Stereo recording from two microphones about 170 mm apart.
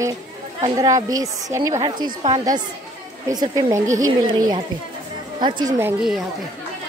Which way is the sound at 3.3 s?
20° right (ahead or behind).